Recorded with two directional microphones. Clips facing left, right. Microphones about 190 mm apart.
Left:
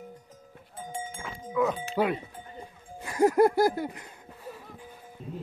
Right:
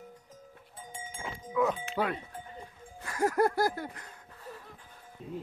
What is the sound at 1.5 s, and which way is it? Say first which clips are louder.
Livestock: left 2 dB; centre (ahead or behind).